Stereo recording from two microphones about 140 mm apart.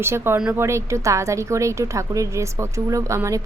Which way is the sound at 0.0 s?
15° right (ahead or behind).